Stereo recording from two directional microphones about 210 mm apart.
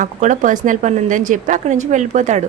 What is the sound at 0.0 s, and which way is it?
A woman's voice, 35° right (ahead or behind).